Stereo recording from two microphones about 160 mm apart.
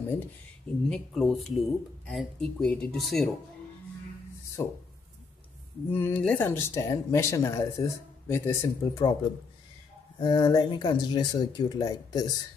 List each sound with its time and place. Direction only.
0.8 s speech: 5° left (ahead or behind)
4.6 s speech: 20° left (ahead or behind)
5.9 s speech: 15° left (ahead or behind)
10.1 s speech: 25° left (ahead or behind)